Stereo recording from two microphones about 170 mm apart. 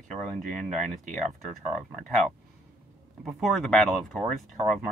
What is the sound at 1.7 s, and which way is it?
Speech, centre (ahead or behind).